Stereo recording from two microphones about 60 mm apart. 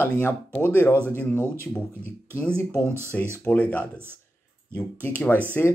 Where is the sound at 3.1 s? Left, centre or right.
Left.